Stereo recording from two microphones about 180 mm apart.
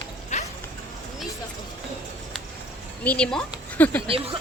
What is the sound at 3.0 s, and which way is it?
Speech, 5° left (ahead or behind).